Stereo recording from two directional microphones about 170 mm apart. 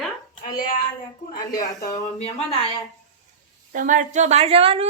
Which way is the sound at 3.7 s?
50° right (ahead or behind).